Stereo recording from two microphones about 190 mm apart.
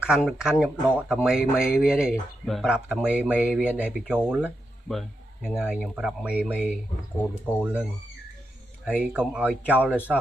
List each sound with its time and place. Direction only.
0.0 s speech: 5° right (ahead or behind)
1.6 s speech: 50° left (ahead or behind)
1.9 s speech: 5° right (ahead or behind)